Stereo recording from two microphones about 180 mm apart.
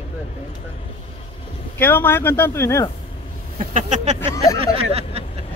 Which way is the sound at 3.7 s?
40° right (ahead or behind).